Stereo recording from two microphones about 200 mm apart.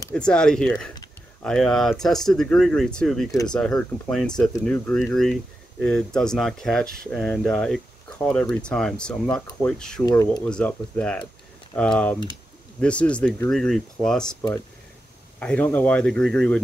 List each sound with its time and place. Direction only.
0.1 s speech: 5° left (ahead or behind)
10.0 s speech: 20° left (ahead or behind)
10.4 s speech: 5° left (ahead or behind)
15.3 s speech: 5° left (ahead or behind)